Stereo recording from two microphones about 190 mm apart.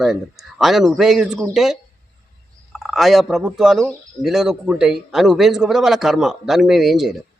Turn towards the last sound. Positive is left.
turn(degrees=0)  # may be behind; listen again after turning